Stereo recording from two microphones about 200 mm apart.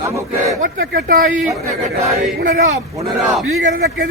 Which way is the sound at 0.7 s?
45° right (ahead or behind).